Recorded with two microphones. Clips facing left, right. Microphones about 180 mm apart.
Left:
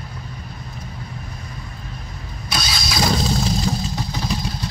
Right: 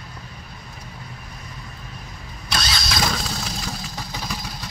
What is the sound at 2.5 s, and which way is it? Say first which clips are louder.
Vehicle: left 1 dB; centre (ahead or behind).